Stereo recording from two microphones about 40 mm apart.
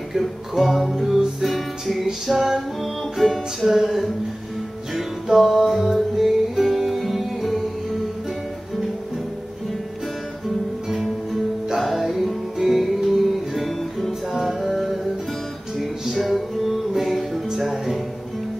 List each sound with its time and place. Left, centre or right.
0.2 s music: centre
11.8 s music: centre
16.3 s music: centre